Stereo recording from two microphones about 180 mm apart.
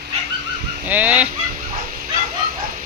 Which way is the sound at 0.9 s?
10° right (ahead or behind).